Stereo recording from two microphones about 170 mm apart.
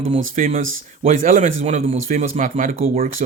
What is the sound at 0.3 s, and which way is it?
Speech, 55° right (ahead or behind).